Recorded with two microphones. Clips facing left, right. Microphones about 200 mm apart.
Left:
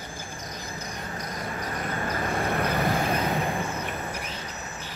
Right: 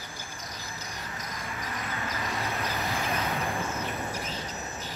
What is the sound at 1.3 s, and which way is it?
Vehicle, 45° left (ahead or behind).